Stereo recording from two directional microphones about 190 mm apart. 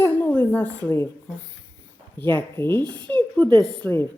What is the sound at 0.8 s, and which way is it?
Speech, 10° left (ahead or behind).